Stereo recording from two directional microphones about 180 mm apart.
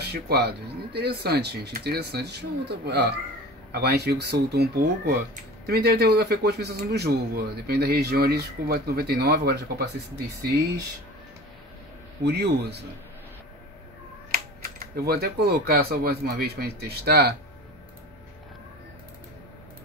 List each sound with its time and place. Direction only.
0.0 s a man's voice: 65° right (ahead or behind)
12.3 s a man's voice: 70° right (ahead or behind)
14.6 s a man's voice: 60° right (ahead or behind)